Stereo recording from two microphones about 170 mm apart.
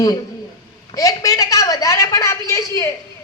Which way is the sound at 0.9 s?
20° left (ahead or behind).